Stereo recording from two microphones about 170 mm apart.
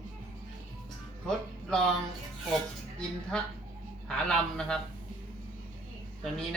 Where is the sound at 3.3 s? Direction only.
5° left (ahead or behind).